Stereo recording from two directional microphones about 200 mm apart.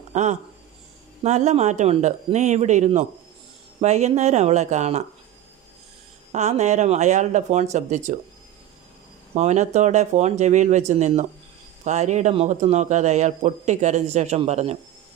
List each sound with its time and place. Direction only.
0.1 s speech: 35° right (ahead or behind)
6.3 s speech: 35° right (ahead or behind)
9.3 s speech: 35° right (ahead or behind)